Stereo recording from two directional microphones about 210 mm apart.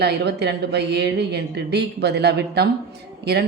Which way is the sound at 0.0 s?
50° right (ahead or behind).